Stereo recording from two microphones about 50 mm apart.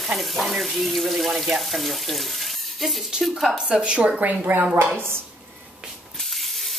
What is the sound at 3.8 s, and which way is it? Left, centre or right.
Speech, right.